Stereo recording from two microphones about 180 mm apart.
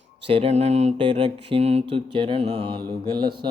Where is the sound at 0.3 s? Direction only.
35° right (ahead or behind).